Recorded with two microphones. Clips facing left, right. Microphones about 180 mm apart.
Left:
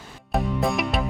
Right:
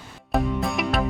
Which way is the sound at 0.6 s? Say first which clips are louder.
Left 1 dB; centre (ahead or behind).